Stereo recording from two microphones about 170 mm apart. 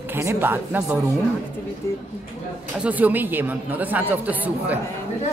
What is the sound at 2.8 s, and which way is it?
Speech, 10° right (ahead or behind).